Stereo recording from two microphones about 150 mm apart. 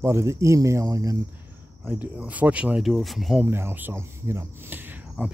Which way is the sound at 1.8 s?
10° right (ahead or behind).